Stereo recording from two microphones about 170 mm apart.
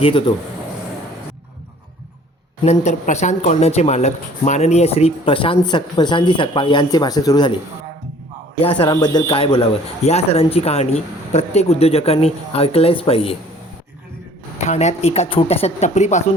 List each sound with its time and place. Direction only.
0.0 s speech: 30° left (ahead or behind)
2.6 s speech: 40° left (ahead or behind); by 7.5 s 25° left (ahead or behind)
8.6 s speech: 30° left (ahead or behind)
14.7 s speech: 40° left (ahead or behind)